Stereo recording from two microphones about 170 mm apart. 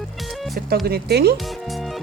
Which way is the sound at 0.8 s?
70° right (ahead or behind).